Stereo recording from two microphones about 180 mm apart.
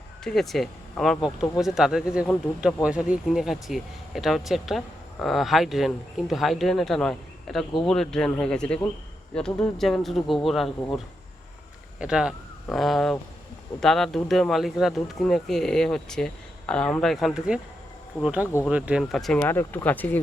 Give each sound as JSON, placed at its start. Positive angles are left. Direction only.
{"t": 0.3, "sound": "speech", "side_deg": 0}
{"t": 2.5, "sound": "speech", "side_deg": 15}
{"t": 2.8, "sound": "speech", "side_deg": -5}
{"t": 11.9, "sound": "speech", "side_deg": -5}